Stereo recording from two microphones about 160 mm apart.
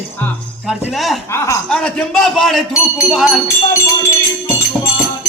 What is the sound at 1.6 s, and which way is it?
Speech, 5° left (ahead or behind).